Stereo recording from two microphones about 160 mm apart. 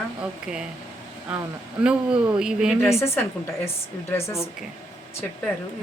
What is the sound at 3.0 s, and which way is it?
A woman's voice, 15° left (ahead or behind).